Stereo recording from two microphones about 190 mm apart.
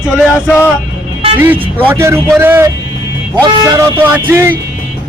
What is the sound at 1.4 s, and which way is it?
Speech, 10° right (ahead or behind).